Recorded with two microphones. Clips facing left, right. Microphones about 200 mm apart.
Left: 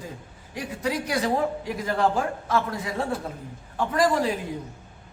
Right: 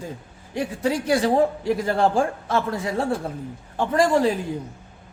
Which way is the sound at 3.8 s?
30° right (ahead or behind).